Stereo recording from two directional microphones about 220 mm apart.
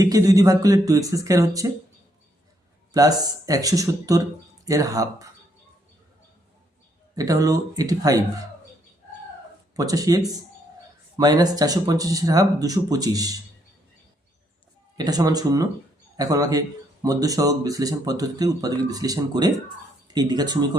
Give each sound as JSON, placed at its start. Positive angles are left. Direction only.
{"t": 0.0, "sound": "speech", "side_deg": -15}
{"t": 2.9, "sound": "speech", "side_deg": -15}
{"t": 7.2, "sound": "speech", "side_deg": -15}
{"t": 9.7, "sound": "speech", "side_deg": -15}
{"t": 14.9, "sound": "speech", "side_deg": -15}